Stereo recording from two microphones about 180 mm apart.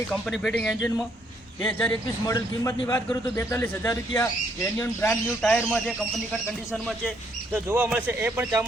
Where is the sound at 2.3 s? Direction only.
20° left (ahead or behind).